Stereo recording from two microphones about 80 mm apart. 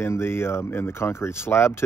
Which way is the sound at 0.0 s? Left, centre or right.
Left.